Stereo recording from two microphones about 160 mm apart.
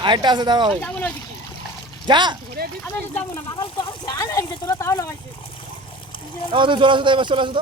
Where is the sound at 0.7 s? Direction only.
10° left (ahead or behind).